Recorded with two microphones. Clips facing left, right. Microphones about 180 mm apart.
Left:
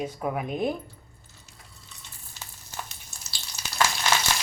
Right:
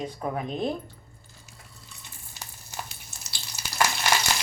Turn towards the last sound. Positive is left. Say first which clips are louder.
# even
turn(degrees=-10)  # may be behind; listen again after turning